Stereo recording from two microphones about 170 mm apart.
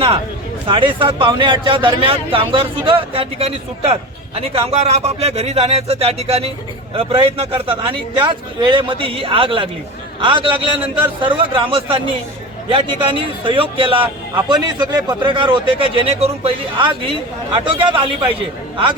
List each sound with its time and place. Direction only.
0.7 s speech: 30° right (ahead or behind)